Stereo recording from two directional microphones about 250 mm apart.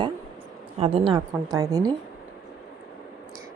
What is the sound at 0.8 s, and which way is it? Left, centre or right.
A woman's voice, right.